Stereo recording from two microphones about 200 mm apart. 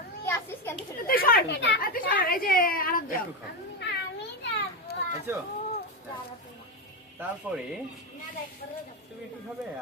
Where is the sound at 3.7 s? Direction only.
60° left (ahead or behind).